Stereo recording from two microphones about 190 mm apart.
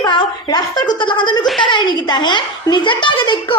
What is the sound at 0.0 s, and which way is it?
A child's voice, 25° left (ahead or behind).